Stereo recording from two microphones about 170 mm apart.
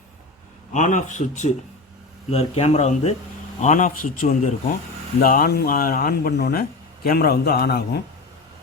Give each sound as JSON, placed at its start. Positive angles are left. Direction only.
{"t": 0.7, "sound": "a man's voice", "side_deg": 45}